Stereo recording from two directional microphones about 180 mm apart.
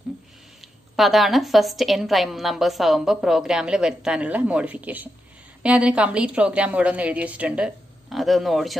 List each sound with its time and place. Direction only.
0.9 s a woman's voice: centre (ahead or behind)